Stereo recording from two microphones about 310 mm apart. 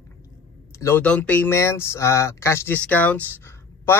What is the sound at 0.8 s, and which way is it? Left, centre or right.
Speech, centre.